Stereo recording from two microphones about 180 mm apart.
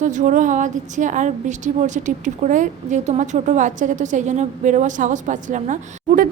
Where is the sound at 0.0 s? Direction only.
45° right (ahead or behind).